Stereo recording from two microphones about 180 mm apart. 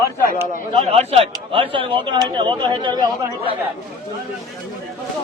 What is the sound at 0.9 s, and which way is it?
Speech, 30° right (ahead or behind).